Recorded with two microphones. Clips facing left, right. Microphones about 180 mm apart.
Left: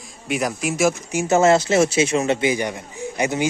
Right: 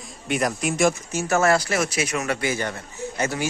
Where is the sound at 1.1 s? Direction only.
20° left (ahead or behind).